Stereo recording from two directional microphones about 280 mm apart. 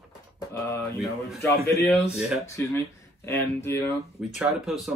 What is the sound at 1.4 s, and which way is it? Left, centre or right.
Speech, centre.